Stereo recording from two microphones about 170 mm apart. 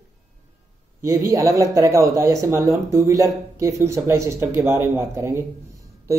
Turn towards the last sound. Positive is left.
turn(degrees=-15)  # may be behind; listen again after turning